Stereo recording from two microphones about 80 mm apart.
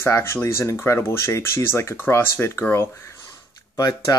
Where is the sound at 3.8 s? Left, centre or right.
Left.